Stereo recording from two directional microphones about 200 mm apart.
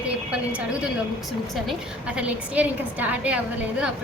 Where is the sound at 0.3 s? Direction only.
5° right (ahead or behind).